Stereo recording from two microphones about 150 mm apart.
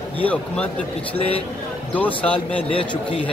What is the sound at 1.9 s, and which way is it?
Speech, 10° left (ahead or behind).